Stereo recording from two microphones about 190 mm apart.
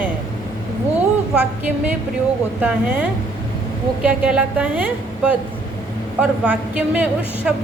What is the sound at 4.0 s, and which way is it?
A woman's voice, 5° right (ahead or behind).